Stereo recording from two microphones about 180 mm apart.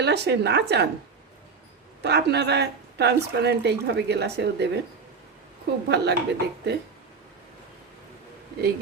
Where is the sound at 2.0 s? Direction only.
65° right (ahead or behind).